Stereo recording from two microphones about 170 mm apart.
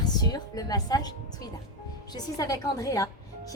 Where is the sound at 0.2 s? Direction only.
25° left (ahead or behind).